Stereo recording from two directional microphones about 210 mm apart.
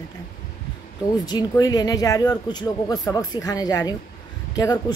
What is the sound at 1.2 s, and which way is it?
A woman's voice, 20° left (ahead or behind).